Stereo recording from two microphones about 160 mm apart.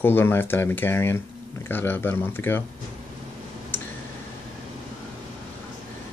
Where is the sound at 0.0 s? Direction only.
15° left (ahead or behind).